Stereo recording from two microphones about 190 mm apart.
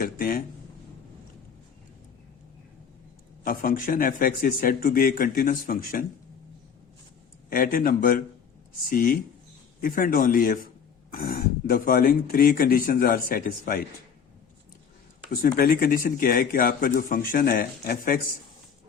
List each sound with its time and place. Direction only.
0.0 s a man's voice: 50° left (ahead or behind)
3.4 s a man's voice: 50° left (ahead or behind)
7.5 s a man's voice: 50° left (ahead or behind)
15.4 s a man's voice: 50° left (ahead or behind)